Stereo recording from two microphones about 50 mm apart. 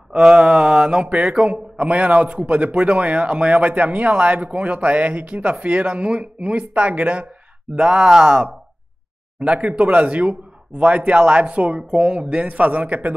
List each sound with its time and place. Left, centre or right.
0.1 s a man's voice: centre